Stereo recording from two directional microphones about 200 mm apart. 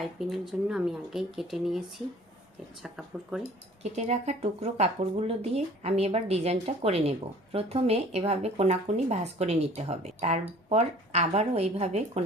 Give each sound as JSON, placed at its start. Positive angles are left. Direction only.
{"t": 0.0, "sound": "speech", "side_deg": 0}
{"t": 2.8, "sound": "speech", "side_deg": 0}
{"t": 3.9, "sound": "speech", "side_deg": -35}